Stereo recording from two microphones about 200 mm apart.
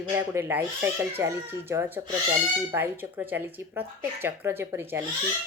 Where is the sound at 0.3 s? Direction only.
10° right (ahead or behind).